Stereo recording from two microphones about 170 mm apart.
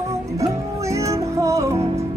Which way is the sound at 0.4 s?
15° right (ahead or behind).